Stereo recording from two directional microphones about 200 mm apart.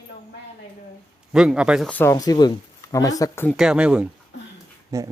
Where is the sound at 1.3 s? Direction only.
5° right (ahead or behind).